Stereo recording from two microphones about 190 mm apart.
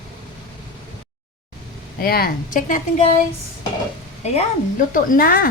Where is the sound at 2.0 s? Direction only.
50° left (ahead or behind).